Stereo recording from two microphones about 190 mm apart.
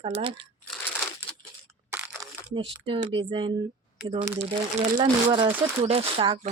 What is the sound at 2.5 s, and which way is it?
Speech, 25° right (ahead or behind).